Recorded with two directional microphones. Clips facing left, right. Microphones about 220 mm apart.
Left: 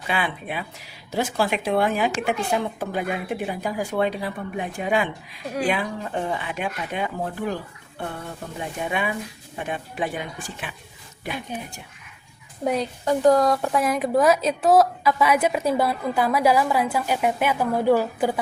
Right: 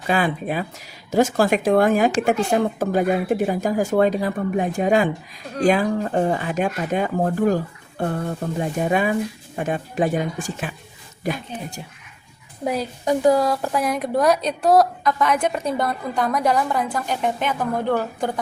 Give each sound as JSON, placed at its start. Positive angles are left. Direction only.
{"t": 0.1, "sound": "a woman's voice", "side_deg": -40}
{"t": 12.6, "sound": "a woman's voice", "side_deg": 0}